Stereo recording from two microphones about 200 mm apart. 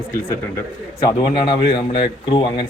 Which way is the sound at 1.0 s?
20° left (ahead or behind).